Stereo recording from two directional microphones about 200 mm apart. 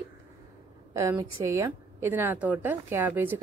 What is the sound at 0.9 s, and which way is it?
A woman's voice, 15° right (ahead or behind).